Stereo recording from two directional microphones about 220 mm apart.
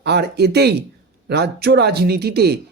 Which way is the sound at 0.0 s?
50° right (ahead or behind).